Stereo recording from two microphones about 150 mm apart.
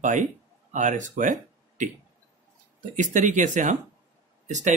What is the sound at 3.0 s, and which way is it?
Speech, 55° right (ahead or behind).